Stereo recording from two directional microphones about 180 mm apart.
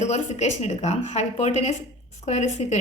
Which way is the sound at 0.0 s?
40° left (ahead or behind).